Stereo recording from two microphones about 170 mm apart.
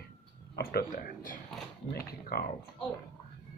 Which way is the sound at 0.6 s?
65° left (ahead or behind).